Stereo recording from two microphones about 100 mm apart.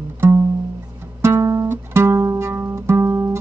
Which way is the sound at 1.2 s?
30° right (ahead or behind).